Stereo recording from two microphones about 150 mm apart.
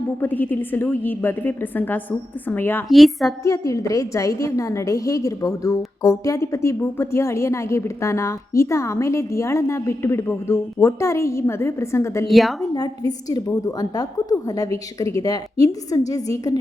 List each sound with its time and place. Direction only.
0.2 s a woman's voice: 10° left (ahead or behind)
2.9 s a woman's voice: centre (ahead or behind)
3.4 s a woman's voice: 20° left (ahead or behind)
12.3 s a woman's voice: centre (ahead or behind)
13.1 s a woman's voice: 25° left (ahead or behind)